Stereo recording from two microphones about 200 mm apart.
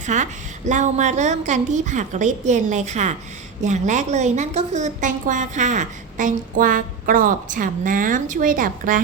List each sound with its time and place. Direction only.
0.0 s a woman's voice: 35° right (ahead or behind)